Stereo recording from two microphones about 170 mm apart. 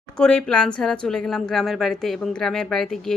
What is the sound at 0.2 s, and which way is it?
A woman's voice, 5° left (ahead or behind).